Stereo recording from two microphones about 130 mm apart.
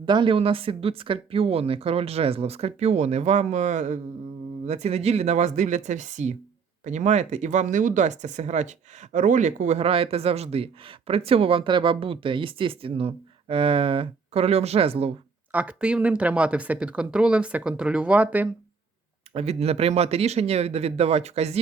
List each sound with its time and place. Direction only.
0.0 s speech: 40° right (ahead or behind)
15.5 s speech: 10° right (ahead or behind)
19.3 s speech: 50° right (ahead or behind)